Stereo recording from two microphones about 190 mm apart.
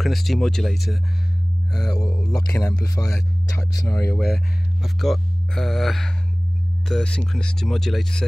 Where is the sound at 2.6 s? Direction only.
15° left (ahead or behind).